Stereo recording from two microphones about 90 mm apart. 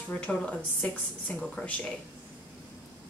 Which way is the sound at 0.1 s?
15° left (ahead or behind).